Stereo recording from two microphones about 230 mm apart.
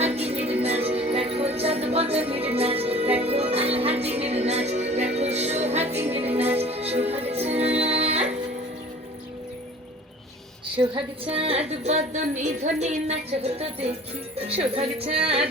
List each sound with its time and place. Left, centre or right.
0.0 s music: right
10.9 s a woman's voice: right